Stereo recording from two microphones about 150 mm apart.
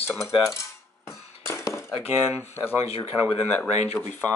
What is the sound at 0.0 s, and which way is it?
Cutlery, 15° left (ahead or behind).